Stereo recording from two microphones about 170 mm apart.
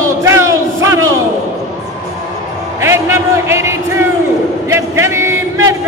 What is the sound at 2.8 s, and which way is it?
A man's voice, 15° right (ahead or behind).